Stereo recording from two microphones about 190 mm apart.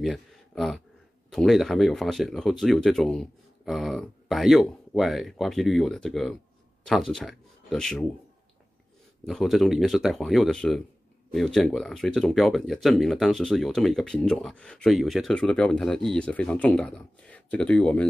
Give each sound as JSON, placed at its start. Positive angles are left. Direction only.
{"t": 0.0, "sound": "a sound", "side_deg": 0}
{"t": 1.3, "sound": "speech", "side_deg": 0}
{"t": 9.2, "sound": "speech", "side_deg": 0}